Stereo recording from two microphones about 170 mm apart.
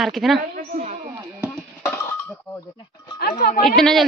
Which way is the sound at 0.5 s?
45° right (ahead or behind).